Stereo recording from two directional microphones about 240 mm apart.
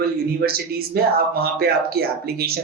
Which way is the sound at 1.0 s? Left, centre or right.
Right.